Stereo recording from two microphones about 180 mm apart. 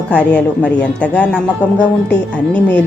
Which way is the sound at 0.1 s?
5° left (ahead or behind).